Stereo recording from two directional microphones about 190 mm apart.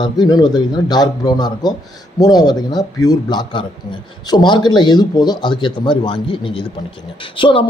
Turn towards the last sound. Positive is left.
turn(degrees=25)  # may be behind; listen again after turning